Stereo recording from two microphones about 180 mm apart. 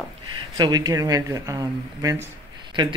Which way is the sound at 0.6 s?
20° right (ahead or behind).